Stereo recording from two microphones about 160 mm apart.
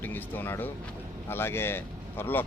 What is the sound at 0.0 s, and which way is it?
Speech, 10° left (ahead or behind).